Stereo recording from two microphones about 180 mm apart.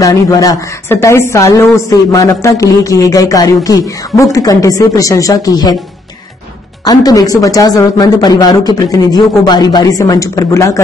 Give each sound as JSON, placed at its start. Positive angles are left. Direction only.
{"t": 0.0, "sound": "a woman's voice", "side_deg": 20}
{"t": 6.8, "sound": "a woman's voice", "side_deg": 20}